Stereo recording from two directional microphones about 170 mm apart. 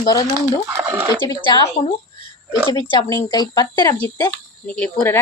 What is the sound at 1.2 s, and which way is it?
Speech, 25° left (ahead or behind).